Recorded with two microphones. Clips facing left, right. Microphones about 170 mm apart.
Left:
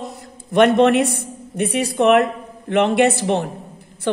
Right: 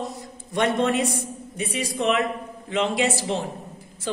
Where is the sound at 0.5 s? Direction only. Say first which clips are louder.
Left 9 dB; 65° left (ahead or behind).